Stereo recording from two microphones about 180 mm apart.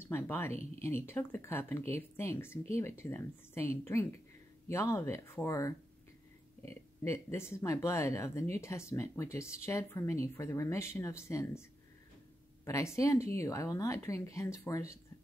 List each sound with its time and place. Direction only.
0.0 s speech: 15° left (ahead or behind)
12.6 s speech: 15° left (ahead or behind)